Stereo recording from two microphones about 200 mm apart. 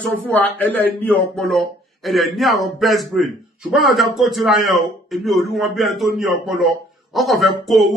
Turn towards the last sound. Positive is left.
turn(degrees=0)  # may be behind; listen again after turning